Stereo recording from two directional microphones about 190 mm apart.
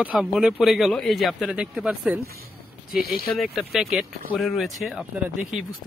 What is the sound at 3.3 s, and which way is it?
Speech, centre (ahead or behind).